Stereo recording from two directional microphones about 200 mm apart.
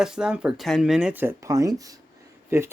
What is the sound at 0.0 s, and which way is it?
Speech, 5° right (ahead or behind).